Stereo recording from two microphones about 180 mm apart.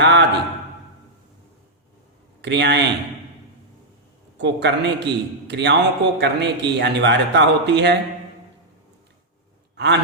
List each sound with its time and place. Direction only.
0.0 s a sound: 75° right (ahead or behind)
2.4 s a man's voice: 75° right (ahead or behind)
4.4 s a man's voice: 75° right (ahead or behind)
9.7 s sigh: 70° right (ahead or behind)